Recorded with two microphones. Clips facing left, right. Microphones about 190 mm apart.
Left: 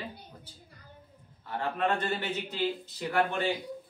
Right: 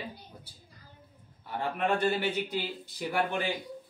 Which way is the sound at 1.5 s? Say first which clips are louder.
Even; 10° right (ahead or behind).